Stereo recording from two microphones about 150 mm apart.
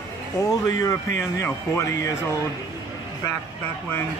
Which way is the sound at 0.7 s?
20° left (ahead or behind).